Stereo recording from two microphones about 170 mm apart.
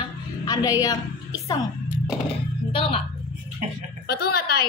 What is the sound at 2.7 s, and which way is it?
Speech, 30° left (ahead or behind).